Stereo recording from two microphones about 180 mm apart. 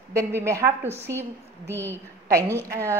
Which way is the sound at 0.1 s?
15° right (ahead or behind).